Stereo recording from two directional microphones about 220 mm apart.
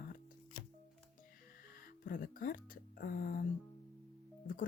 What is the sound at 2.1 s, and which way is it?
Speech, 40° left (ahead or behind).